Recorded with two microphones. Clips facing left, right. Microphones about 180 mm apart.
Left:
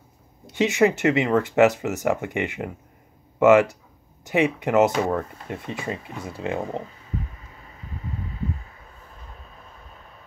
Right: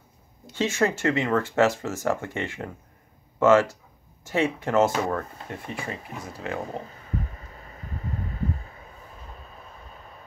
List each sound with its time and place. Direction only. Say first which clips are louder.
0.5 s speech: left 5 dB; 15° left (ahead or behind)